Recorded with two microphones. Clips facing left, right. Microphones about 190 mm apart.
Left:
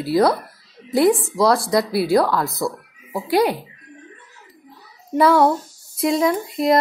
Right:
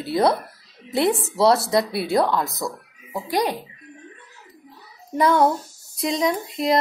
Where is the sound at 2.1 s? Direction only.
20° right (ahead or behind).